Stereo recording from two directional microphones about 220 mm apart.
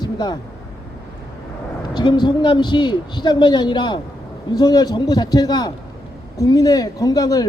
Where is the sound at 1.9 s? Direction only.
20° left (ahead or behind).